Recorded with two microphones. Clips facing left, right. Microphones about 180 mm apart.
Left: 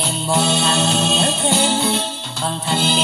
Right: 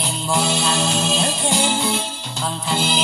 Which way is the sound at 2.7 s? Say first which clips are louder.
Left 2 dB; 25° left (ahead or behind).